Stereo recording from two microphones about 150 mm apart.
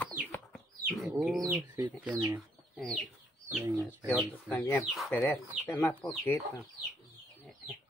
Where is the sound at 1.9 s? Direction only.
10° right (ahead or behind).